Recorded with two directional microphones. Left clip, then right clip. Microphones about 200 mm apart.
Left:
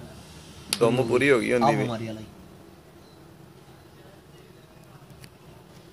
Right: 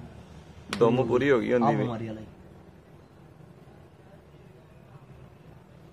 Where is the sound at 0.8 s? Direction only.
5° right (ahead or behind).